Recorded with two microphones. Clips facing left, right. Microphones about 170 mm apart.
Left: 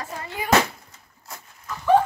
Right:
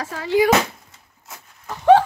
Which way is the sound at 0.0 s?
90° right.